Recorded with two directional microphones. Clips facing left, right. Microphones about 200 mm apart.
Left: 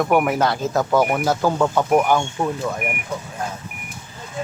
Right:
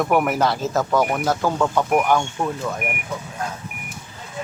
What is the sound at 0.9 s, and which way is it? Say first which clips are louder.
Speech: left 3 dB; 20° left (ahead or behind).